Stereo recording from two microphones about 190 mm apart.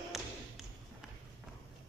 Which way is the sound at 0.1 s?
Centre (ahead or behind).